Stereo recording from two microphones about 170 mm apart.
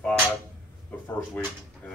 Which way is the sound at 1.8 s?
10° left (ahead or behind).